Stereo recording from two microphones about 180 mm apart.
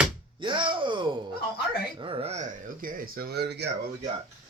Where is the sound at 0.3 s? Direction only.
25° right (ahead or behind).